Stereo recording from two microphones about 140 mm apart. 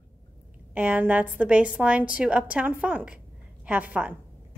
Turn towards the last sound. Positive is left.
turn(degrees=-10)  # may be behind; listen again after turning